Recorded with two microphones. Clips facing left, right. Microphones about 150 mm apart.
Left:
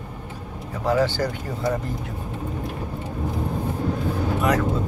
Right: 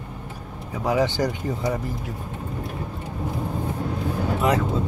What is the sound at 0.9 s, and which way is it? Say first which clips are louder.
Speech: even; 15° right (ahead or behind).